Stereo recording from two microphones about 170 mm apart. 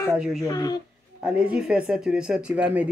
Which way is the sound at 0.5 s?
25° left (ahead or behind).